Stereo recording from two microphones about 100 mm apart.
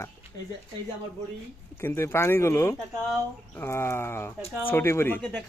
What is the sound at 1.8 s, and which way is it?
A man's voice, 25° left (ahead or behind).